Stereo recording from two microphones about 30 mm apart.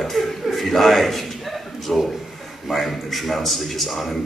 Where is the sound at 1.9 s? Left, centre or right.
Centre.